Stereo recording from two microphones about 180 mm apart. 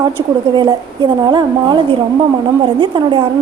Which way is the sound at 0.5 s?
25° right (ahead or behind).